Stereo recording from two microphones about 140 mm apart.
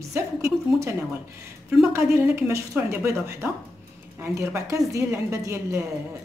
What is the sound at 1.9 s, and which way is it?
Speech, 20° right (ahead or behind).